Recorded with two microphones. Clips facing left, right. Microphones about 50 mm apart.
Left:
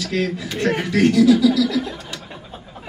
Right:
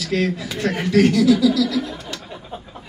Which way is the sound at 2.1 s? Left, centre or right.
Centre.